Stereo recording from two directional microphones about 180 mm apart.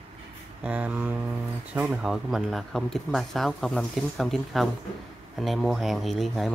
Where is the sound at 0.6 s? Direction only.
5° right (ahead or behind).